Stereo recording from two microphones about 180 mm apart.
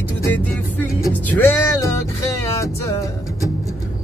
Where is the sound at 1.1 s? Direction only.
10° left (ahead or behind).